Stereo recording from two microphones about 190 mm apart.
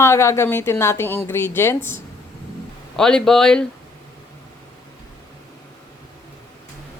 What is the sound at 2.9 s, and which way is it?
Speech, 5° left (ahead or behind).